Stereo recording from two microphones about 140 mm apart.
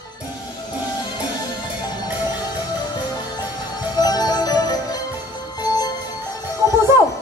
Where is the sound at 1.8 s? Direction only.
30° left (ahead or behind).